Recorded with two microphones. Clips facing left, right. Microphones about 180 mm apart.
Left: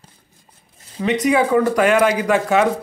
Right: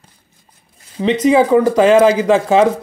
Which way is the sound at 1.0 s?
25° right (ahead or behind).